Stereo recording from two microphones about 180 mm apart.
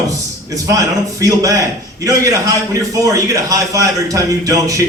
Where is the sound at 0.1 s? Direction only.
20° right (ahead or behind).